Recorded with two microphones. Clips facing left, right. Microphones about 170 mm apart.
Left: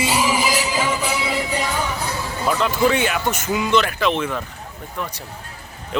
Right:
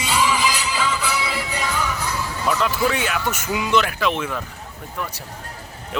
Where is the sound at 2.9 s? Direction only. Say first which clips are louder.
Left 3 dB; centre (ahead or behind).